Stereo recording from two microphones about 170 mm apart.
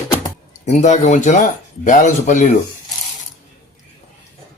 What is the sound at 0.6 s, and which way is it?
A man's voice, 45° left (ahead or behind).